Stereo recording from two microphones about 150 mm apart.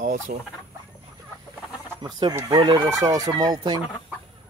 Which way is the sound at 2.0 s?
30° right (ahead or behind).